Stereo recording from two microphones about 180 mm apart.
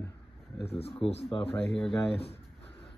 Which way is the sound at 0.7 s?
35° left (ahead or behind).